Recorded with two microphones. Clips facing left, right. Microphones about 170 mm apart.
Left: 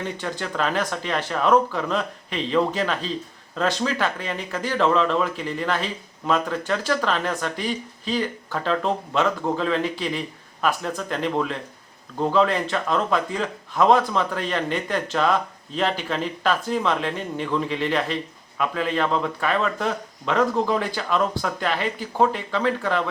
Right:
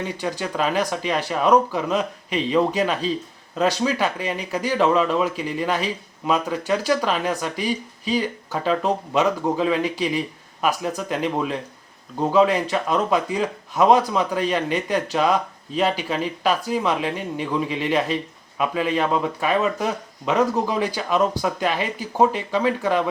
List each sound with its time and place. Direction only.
0.2 s speech: 15° right (ahead or behind)